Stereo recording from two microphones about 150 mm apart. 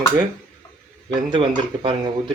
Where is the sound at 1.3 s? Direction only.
35° right (ahead or behind).